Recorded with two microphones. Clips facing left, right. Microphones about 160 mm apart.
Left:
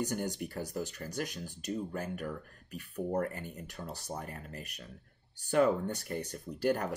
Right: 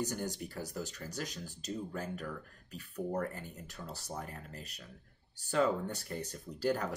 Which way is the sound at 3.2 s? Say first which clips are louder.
Left 3 dB; 60° left (ahead or behind).